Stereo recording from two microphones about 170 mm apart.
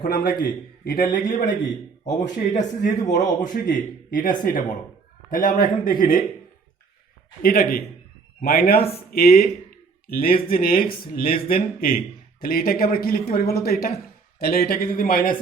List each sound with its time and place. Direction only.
0.0 s speech: 60° left (ahead or behind)
2.5 s a man's voice: 45° left (ahead or behind)
7.4 s speech: 60° left (ahead or behind)
8.8 s speech: 35° left (ahead or behind)
9.1 s speech: 65° left (ahead or behind)